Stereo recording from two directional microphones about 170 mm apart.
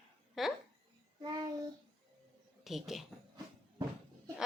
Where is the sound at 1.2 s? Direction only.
25° right (ahead or behind).